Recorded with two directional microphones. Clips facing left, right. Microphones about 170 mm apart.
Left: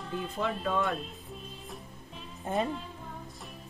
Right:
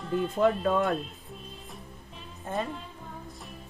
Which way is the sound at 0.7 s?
50° right (ahead or behind).